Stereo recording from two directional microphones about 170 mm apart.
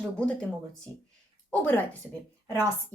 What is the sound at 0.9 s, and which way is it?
Speech, 20° right (ahead or behind).